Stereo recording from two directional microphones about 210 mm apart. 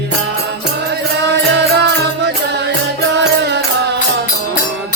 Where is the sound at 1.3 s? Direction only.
55° right (ahead or behind).